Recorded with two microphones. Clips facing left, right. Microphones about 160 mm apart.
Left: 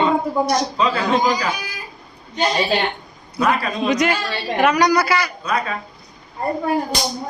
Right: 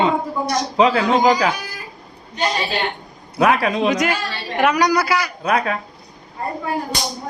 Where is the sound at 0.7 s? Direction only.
75° right (ahead or behind).